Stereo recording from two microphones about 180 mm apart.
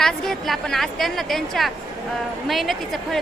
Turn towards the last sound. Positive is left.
turn(degrees=0)  # may be behind; listen again after turning